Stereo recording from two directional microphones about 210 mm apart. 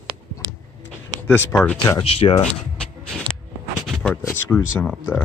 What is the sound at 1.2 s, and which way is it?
Speech, 10° left (ahead or behind).